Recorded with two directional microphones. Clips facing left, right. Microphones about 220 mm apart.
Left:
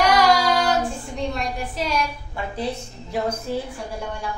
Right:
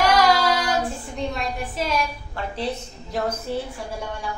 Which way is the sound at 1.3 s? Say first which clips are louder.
Left 1 dB; centre (ahead or behind).